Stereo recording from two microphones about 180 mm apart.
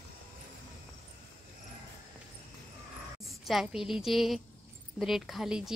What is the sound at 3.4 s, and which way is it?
Speech, centre (ahead or behind).